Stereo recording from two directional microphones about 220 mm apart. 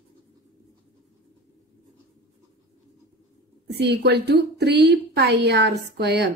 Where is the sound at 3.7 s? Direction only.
50° right (ahead or behind).